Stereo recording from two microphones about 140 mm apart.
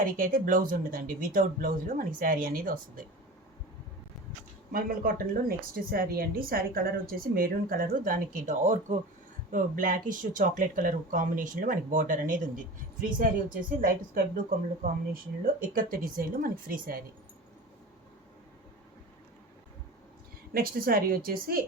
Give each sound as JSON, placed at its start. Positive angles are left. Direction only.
{"t": 0.0, "sound": "speech", "side_deg": -80}
{"t": 4.7, "sound": "speech", "side_deg": -90}
{"t": 20.5, "sound": "speech", "side_deg": -90}